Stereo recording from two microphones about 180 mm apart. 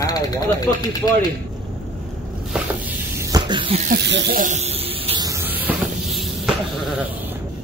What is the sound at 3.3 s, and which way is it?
Snake, 25° right (ahead or behind).